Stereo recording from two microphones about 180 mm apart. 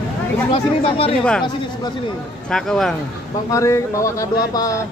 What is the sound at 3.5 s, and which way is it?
A man's voice, 15° left (ahead or behind).